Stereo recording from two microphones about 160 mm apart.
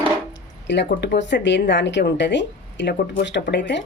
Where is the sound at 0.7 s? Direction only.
90° left.